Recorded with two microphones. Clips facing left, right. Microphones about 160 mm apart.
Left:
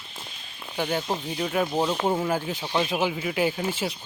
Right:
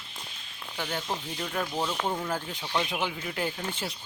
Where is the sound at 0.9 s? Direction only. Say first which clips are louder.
Left 5 dB; 20° left (ahead or behind).